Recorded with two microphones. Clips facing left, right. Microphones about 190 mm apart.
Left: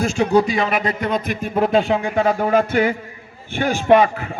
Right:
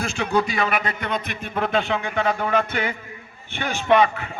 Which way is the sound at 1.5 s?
40° left (ahead or behind).